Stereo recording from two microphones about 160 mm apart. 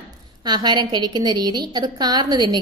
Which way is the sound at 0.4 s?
25° right (ahead or behind).